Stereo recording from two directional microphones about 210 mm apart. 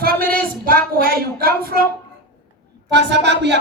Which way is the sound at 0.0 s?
45° right (ahead or behind).